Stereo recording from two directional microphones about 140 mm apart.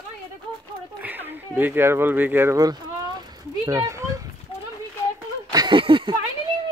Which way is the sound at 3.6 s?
20° right (ahead or behind).